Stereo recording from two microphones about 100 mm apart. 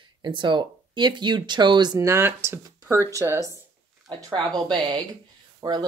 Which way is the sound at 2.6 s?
35° right (ahead or behind).